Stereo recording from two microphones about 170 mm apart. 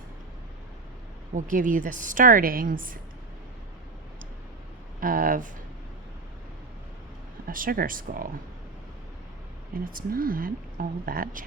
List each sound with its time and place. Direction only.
1.4 s a woman's voice: 50° right (ahead or behind)
4.9 s speech: 55° right (ahead or behind)
7.4 s speech: 55° right (ahead or behind)
9.7 s speech: 55° right (ahead or behind)